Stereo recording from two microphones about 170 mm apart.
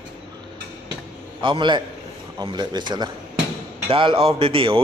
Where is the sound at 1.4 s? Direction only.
30° right (ahead or behind).